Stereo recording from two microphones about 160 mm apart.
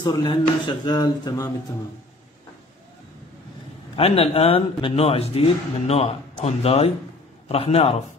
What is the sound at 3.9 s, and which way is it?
A man's voice, 40° left (ahead or behind).